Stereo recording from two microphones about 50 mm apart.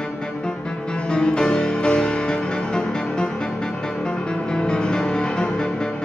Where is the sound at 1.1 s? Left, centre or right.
Centre.